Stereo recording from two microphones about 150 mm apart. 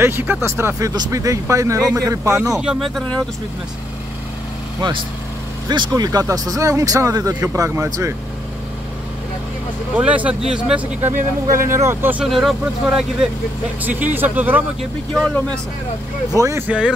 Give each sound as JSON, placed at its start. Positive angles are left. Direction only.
{"t": 0.0, "sound": "speech", "side_deg": -15}
{"t": 2.5, "sound": "speech", "side_deg": -5}
{"t": 5.7, "sound": "speech", "side_deg": -25}
{"t": 9.9, "sound": "speech", "side_deg": -10}
{"t": 11.1, "sound": "speech", "side_deg": -60}
{"t": 11.7, "sound": "speech", "side_deg": -15}
{"t": 12.3, "sound": "speech", "side_deg": 0}
{"t": 16.3, "sound": "speech", "side_deg": -20}